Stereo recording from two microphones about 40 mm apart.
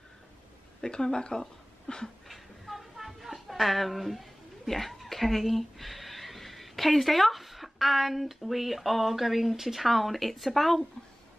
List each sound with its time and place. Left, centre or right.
0.7 s speech: centre
2.2 s speech: centre